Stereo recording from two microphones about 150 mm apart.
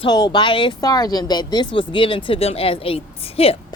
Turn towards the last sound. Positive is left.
turn(degrees=40)  # may be behind; listen again after turning